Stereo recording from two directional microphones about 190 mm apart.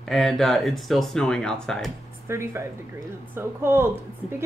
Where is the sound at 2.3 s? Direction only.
15° right (ahead or behind).